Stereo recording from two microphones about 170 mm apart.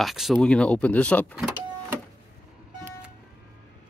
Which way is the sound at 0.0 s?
Centre (ahead or behind).